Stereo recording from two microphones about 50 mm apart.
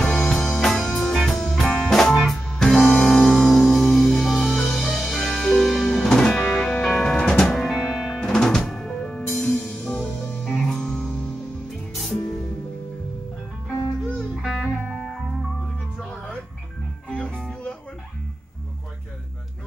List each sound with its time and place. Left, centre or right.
0.0 s music: centre
7.7 s music: centre
8.2 s music: centre
9.6 s music: left
11.9 s music: centre
14.4 s music: centre
17.1 s music: left